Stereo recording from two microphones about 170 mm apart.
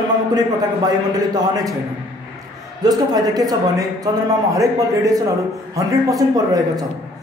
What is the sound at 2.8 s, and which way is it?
A man's voice, 20° right (ahead or behind).